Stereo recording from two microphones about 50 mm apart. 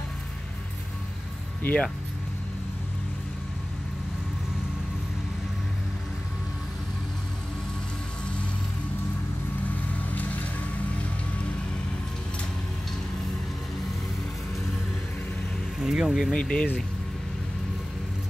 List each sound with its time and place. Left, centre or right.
1.6 s speech: left
10.0 s music: left
15.8 s music: centre
16.3 s speech: centre